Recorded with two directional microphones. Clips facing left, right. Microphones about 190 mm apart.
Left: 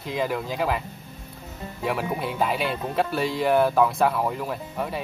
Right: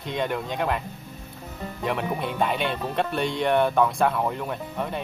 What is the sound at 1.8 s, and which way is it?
Speech, 5° left (ahead or behind).